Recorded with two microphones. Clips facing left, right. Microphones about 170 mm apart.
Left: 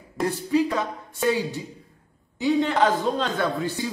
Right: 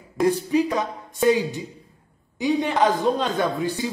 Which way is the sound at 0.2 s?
Centre (ahead or behind).